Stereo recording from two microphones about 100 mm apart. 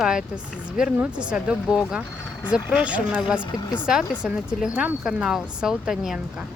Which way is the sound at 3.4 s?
45° left (ahead or behind).